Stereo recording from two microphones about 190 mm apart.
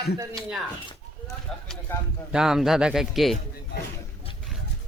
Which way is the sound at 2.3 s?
5° right (ahead or behind).